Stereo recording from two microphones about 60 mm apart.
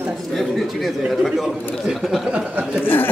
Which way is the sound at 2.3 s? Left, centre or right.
Right.